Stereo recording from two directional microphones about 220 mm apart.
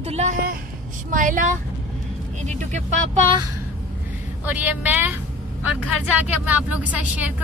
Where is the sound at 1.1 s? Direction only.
35° right (ahead or behind).